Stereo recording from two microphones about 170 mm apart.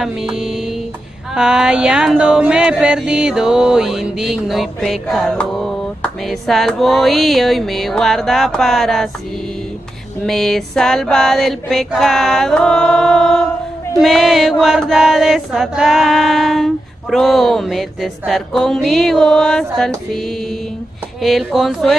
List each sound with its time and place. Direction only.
0.0 s chant: centre (ahead or behind)
10.2 s chant: centre (ahead or behind)